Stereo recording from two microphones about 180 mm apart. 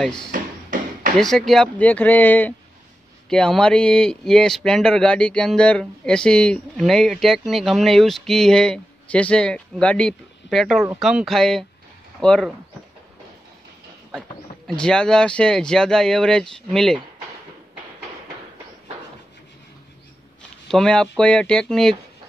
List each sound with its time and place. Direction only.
0.3 s a sound: 50° right (ahead or behind)
1.1 s speech: centre (ahead or behind)
14.8 s speech: 5° left (ahead or behind)
20.6 s speech: 5° left (ahead or behind)